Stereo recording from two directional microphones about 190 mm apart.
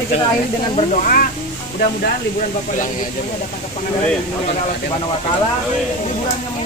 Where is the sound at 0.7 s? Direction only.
40° left (ahead or behind).